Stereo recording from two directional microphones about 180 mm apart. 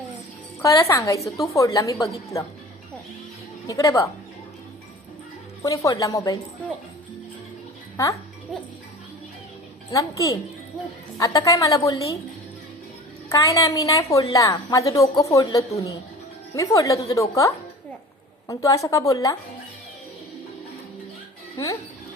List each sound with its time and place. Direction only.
0.6 s a woman's voice: 20° left (ahead or behind)
3.7 s a woman's voice: 20° left (ahead or behind)
5.6 s a woman's voice: 20° left (ahead or behind)
7.9 s a woman's voice: 15° left (ahead or behind)
9.9 s a woman's voice: 20° left (ahead or behind)
13.3 s a woman's voice: 20° left (ahead or behind)